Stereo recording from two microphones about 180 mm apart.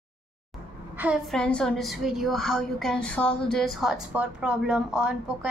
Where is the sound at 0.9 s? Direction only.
5° right (ahead or behind).